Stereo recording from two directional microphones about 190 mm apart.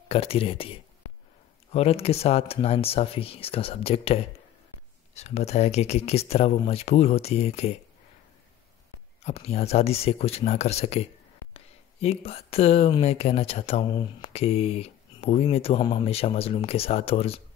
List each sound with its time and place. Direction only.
0.1 s speech: 30° left (ahead or behind)
9.2 s speech: 35° left (ahead or behind)